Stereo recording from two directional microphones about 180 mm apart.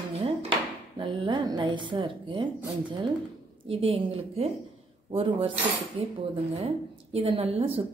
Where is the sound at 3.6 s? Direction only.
30° right (ahead or behind).